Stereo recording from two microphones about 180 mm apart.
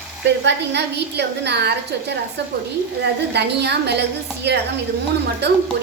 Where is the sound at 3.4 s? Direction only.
70° right (ahead or behind).